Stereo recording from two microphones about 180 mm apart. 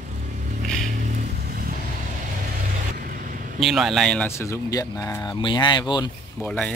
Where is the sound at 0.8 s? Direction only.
45° right (ahead or behind).